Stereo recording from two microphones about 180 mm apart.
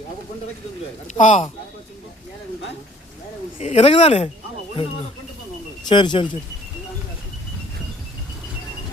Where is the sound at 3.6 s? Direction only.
35° left (ahead or behind).